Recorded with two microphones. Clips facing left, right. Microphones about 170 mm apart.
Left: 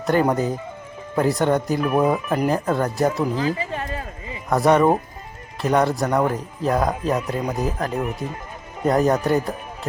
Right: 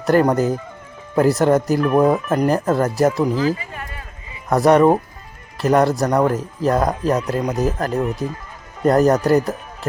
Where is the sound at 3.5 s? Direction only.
30° left (ahead or behind).